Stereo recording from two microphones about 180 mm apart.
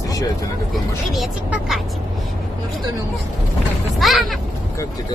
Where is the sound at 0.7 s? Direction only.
5° right (ahead or behind).